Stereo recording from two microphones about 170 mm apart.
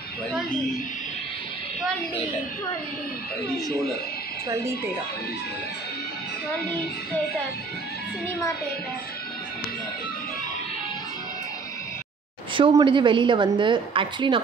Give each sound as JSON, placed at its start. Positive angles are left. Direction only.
{"t": 12.5, "sound": "a woman's voice", "side_deg": -30}